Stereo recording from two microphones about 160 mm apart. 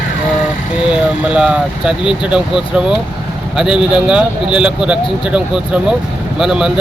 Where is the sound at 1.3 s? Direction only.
5° right (ahead or behind).